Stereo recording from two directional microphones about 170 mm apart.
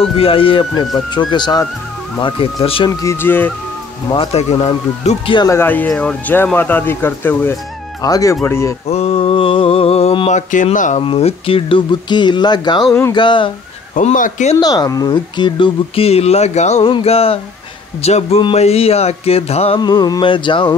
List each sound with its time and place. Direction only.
0.0 s speech: 35° left (ahead or behind)
3.0 s speech: 15° left (ahead or behind)
4.1 s speech: 35° left (ahead or behind)
5.5 s speech: 10° left (ahead or behind)
8.8 s speech: 35° left (ahead or behind)
11.0 s speech: 35° left (ahead or behind)
13.9 s speech: 50° left (ahead or behind)
14.6 s speech: 20° left (ahead or behind); by 19.8 s 35° left (ahead or behind)
19.8 s speech: 25° left (ahead or behind)